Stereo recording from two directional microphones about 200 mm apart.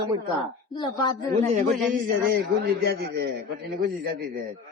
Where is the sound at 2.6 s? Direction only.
55° right (ahead or behind).